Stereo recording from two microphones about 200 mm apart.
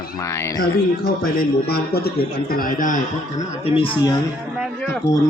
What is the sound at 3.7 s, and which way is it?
Speech, 25° left (ahead or behind).